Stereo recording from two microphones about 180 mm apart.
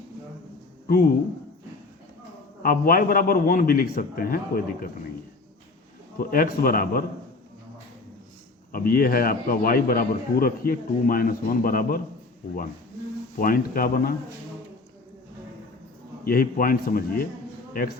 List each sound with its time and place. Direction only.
0.9 s speech: 55° left (ahead or behind)
2.6 s a man's voice: 55° left (ahead or behind)
6.1 s a man's voice: 50° left (ahead or behind)
8.7 s a man's voice: 55° left (ahead or behind)
13.4 s a man's voice: 50° left (ahead or behind)
16.2 s a man's voice: 55° left (ahead or behind)